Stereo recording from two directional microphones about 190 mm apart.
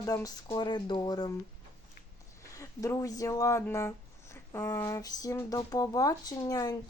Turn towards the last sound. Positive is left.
turn(degrees=20)  # may be behind; listen again after turning